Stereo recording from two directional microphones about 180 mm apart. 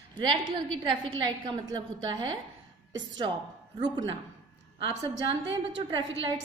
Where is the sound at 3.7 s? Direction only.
25° right (ahead or behind).